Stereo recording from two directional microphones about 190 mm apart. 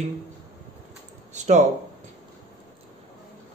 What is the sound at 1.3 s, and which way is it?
Speech, 40° right (ahead or behind).